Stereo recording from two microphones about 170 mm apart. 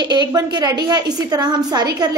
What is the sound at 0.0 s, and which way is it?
A woman's voice, 25° right (ahead or behind).